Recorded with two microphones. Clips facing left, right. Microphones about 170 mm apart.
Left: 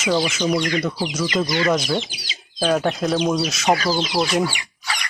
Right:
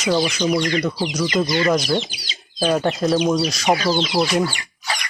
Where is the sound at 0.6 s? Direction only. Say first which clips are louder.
Right 1 dB; 25° right (ahead or behind).